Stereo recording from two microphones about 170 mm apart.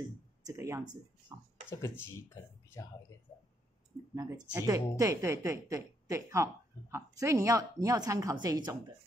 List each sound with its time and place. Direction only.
0.5 s a woman's voice: 15° right (ahead or behind)
1.7 s speech: 15° left (ahead or behind)
4.1 s a woman's voice: 20° right (ahead or behind)